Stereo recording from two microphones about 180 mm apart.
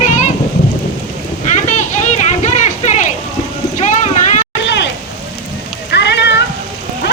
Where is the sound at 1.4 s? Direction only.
40° left (ahead or behind).